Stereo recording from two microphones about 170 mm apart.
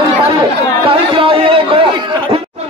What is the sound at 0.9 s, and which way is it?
A man's voice, 30° right (ahead or behind).